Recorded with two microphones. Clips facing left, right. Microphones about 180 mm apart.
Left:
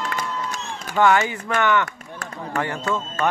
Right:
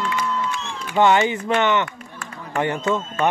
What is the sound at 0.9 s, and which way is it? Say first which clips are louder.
Speech: right 2 dB; 20° right (ahead or behind).